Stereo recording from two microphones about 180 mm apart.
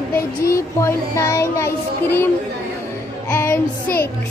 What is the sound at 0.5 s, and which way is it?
Child singing, 15° left (ahead or behind).